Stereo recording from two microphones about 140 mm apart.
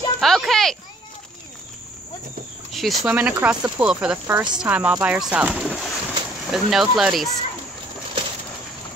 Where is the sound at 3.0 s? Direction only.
10° right (ahead or behind).